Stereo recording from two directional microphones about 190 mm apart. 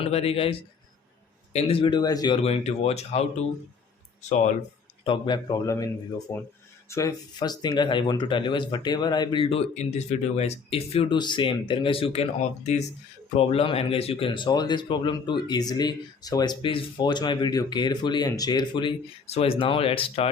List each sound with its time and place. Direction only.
0.0 s a man's voice: 30° left (ahead or behind)
1.5 s a man's voice: 30° left (ahead or behind)
5.0 s speech: 25° left (ahead or behind)